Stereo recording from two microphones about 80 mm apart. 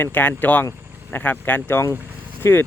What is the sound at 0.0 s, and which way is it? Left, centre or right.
Speech, left.